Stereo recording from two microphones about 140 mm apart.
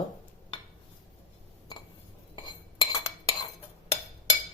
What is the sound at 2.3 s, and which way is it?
Cutlery, 25° left (ahead or behind).